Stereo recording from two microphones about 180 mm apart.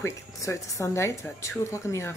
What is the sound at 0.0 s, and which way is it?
Speech, 15° left (ahead or behind).